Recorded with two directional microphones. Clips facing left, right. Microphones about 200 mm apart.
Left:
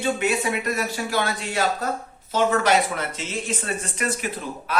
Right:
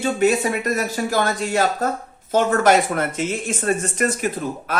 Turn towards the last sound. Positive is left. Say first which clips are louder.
# right 3 dB
turn(degrees=-50)  # may be behind; listen again after turning